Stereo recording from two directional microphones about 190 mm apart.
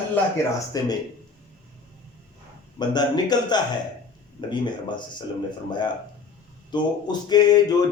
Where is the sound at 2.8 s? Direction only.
20° left (ahead or behind).